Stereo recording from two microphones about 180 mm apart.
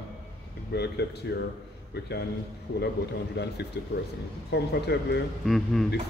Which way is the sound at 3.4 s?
70° left (ahead or behind).